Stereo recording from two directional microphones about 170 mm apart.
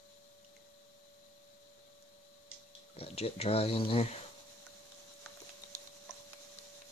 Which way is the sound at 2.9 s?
35° left (ahead or behind).